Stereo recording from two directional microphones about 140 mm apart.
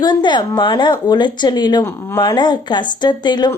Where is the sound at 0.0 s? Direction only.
30° left (ahead or behind).